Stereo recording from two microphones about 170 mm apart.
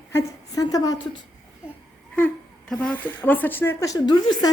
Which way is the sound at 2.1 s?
5° left (ahead or behind).